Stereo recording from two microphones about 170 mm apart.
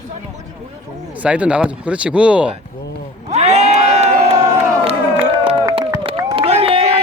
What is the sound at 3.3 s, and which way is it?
Crowd, 40° right (ahead or behind).